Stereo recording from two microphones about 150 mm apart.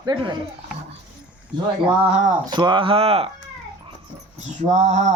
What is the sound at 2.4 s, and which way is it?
Speech, 30° right (ahead or behind).